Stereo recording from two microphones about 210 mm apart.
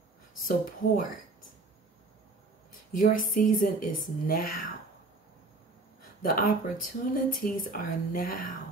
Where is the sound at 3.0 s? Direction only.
40° left (ahead or behind).